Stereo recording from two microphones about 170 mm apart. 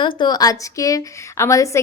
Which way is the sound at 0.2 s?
25° left (ahead or behind).